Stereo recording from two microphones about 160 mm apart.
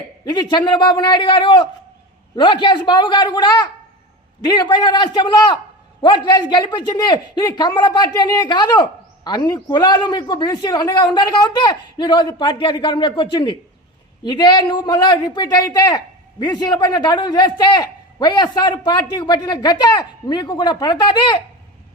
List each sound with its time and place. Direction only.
0.3 s a man's voice: 25° left (ahead or behind)